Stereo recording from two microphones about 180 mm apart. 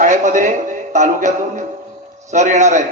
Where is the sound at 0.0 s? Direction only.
45° right (ahead or behind).